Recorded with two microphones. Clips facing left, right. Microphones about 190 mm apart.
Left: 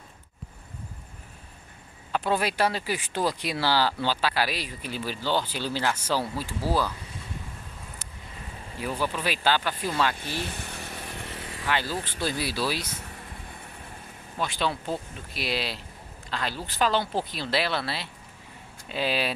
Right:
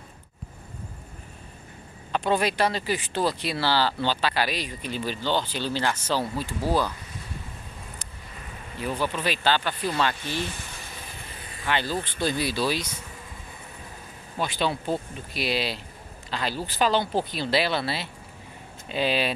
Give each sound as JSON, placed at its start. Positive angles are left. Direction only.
{"t": 2.1, "sound": "speech", "side_deg": 5}
{"t": 8.8, "sound": "speech", "side_deg": 5}
{"t": 10.5, "sound": "vehicle", "side_deg": 65}
{"t": 11.6, "sound": "speech", "side_deg": 5}
{"t": 14.4, "sound": "speech", "side_deg": 0}